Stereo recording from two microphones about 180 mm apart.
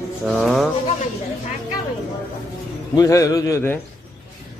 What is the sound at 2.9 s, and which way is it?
Speech, 20° left (ahead or behind).